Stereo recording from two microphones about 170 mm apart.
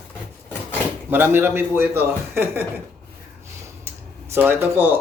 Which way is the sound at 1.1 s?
10° right (ahead or behind).